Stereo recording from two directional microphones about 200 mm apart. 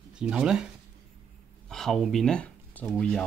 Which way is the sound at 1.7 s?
Centre (ahead or behind).